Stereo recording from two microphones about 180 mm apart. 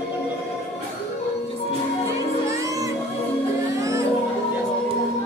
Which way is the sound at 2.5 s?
15° right (ahead or behind).